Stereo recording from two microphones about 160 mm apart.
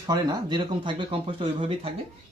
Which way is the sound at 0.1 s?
25° right (ahead or behind).